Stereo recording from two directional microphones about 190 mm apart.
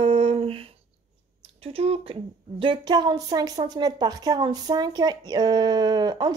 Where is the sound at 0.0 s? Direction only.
30° right (ahead or behind).